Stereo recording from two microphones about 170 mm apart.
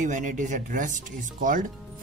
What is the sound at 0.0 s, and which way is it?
Speech, 50° right (ahead or behind).